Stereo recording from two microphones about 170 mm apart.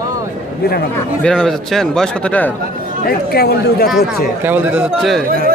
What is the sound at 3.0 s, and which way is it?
Speech, 65° left (ahead or behind).